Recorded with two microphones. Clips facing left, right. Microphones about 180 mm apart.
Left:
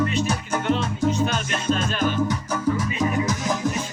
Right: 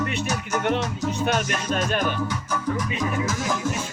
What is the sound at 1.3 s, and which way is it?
Music, 55° right (ahead or behind).